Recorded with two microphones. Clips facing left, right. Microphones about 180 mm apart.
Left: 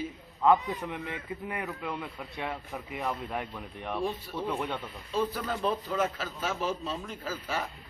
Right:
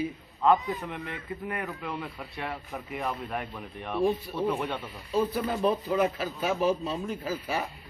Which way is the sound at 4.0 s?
10° right (ahead or behind).